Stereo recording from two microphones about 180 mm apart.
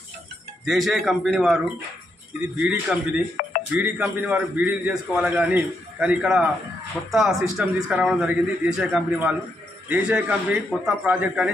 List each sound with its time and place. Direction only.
0.7 s a man's voice: centre (ahead or behind)
3.4 s music: 50° left (ahead or behind)
3.7 s a man's voice: 5° right (ahead or behind)